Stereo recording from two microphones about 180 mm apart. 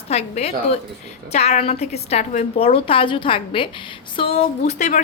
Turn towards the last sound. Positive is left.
turn(degrees=40)  # may be behind; listen again after turning